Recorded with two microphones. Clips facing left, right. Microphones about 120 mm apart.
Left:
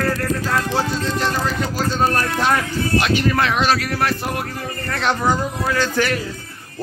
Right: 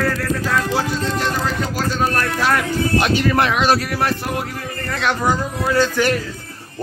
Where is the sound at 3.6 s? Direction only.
25° right (ahead or behind).